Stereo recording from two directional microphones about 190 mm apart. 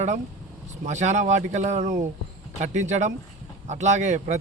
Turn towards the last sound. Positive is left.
turn(degrees=-35)  # may be behind; listen again after turning